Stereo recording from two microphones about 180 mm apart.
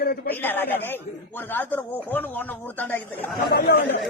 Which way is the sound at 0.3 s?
10° left (ahead or behind).